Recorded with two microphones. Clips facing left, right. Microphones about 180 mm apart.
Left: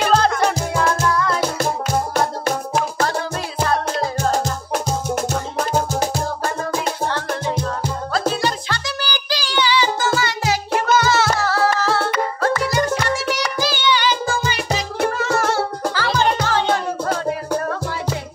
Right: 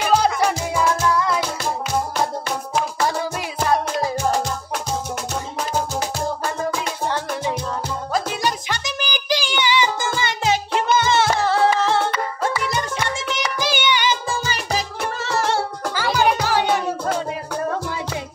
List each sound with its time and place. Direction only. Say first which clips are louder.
0.1 s music: right 2 dB; 5° right (ahead or behind)
3.6 s music: right 1 dB; 15° right (ahead or behind)
4.7 s music: left 7 dB; 45° left (ahead or behind)
8.1 s music: left 2 dB; 15° right (ahead or behind)
13.3 s music: left 2 dB; 20° right (ahead or behind)
15.0 s music: left 6 dB; 40° left (ahead or behind)
15.9 s music: right 2 dB; 15° right (ahead or behind)